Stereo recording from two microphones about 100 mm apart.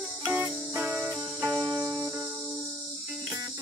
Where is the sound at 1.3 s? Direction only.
35° right (ahead or behind).